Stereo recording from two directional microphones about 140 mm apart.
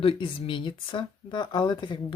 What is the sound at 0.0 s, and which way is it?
Speech, 40° left (ahead or behind).